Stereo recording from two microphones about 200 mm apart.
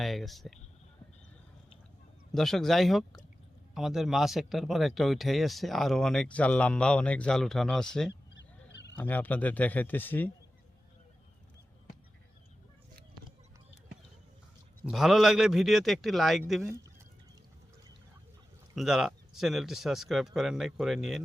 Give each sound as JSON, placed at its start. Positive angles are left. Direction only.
{"t": 0.0, "sound": "speech", "side_deg": 0}
{"t": 2.3, "sound": "speech", "side_deg": 0}
{"t": 8.4, "sound": "a sound", "side_deg": 60}
{"t": 9.0, "sound": "speech", "side_deg": 10}
{"t": 14.8, "sound": "speech", "side_deg": 0}
{"t": 18.7, "sound": "speech", "side_deg": 0}